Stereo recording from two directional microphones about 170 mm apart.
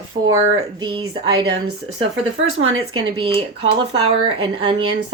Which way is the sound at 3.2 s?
30° right (ahead or behind).